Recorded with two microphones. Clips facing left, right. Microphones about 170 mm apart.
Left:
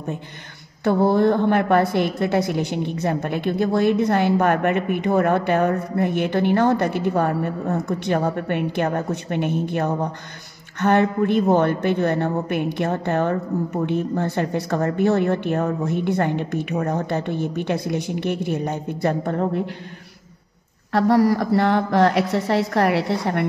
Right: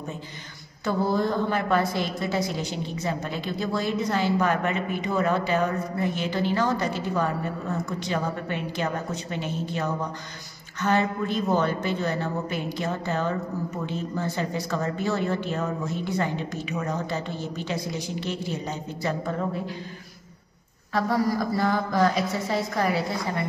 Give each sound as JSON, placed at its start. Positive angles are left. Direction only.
{"t": 0.8, "sound": "a woman's voice", "side_deg": 60}
{"t": 20.9, "sound": "a woman's voice", "side_deg": 70}